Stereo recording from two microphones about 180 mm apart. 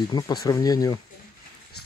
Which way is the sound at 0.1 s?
20° left (ahead or behind).